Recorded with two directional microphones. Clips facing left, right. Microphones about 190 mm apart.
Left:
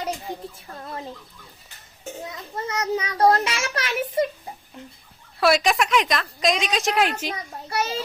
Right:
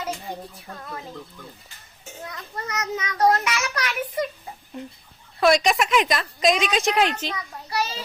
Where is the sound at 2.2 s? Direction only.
20° left (ahead or behind).